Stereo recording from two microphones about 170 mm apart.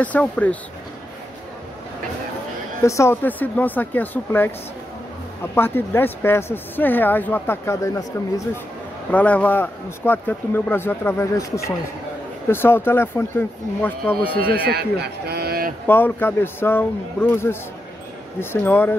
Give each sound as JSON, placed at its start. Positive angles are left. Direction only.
{"t": 0.0, "sound": "a man's voice", "side_deg": 10}
{"t": 2.8, "sound": "a man's voice", "side_deg": 15}
{"t": 9.1, "sound": "a man's voice", "side_deg": 10}
{"t": 14.6, "sound": "a man's voice", "side_deg": -70}
{"t": 15.9, "sound": "a man's voice", "side_deg": 10}